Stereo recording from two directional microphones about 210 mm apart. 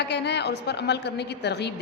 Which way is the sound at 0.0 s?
55° left (ahead or behind).